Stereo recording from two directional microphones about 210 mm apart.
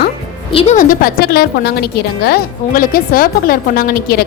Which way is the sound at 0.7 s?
40° left (ahead or behind).